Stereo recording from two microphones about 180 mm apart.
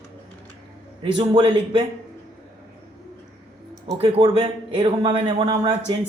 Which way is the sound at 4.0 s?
30° right (ahead or behind).